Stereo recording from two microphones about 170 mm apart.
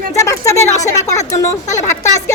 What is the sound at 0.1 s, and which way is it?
Speech, 20° left (ahead or behind).